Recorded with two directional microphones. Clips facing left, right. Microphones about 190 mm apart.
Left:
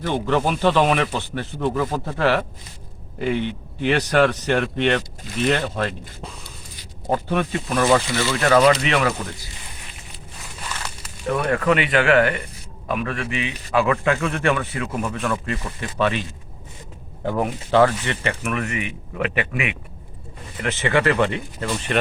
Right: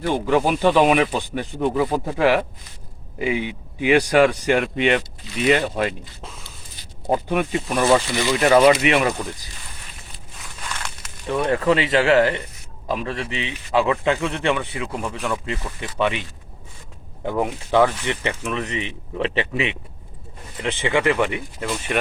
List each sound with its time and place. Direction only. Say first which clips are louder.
0.0 s speech: right 2 dB; 10° right (ahead or behind)
6.2 s a sound: left 2 dB; centre (ahead or behind)
7.1 s speech: right 1 dB; 15° right (ahead or behind)
10.6 s a sound: even; 5° left (ahead or behind)
11.3 s speech: right 1 dB; 25° right (ahead or behind)
17.2 s speech: even; 15° right (ahead or behind)
20.6 s speech: left 1 dB; 15° right (ahead or behind)